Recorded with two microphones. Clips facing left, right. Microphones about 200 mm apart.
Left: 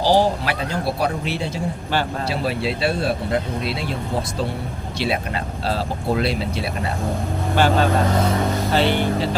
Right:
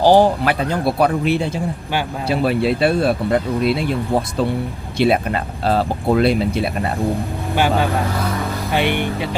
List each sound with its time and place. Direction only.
0.0 s speech: 55° right (ahead or behind)
4.9 s speech: 55° right (ahead or behind)
7.5 s speech: 10° right (ahead or behind)